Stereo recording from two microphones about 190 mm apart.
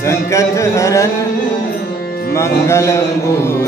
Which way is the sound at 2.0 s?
55° left (ahead or behind).